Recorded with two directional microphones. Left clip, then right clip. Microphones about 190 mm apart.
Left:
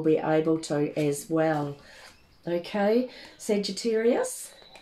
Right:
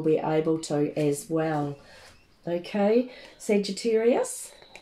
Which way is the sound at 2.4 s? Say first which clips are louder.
Even; 20° left (ahead or behind).